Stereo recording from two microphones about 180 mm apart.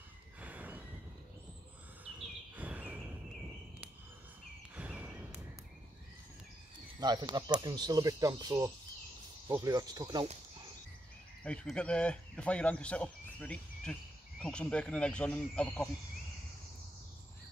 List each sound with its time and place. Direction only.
0.4 s neigh: 10° right (ahead or behind)
2.5 s bird: 10° right (ahead or behind)
4.7 s a sound: 10° right (ahead or behind)
7.0 s speech: 20° right (ahead or behind)
11.4 s speech: 5° left (ahead or behind)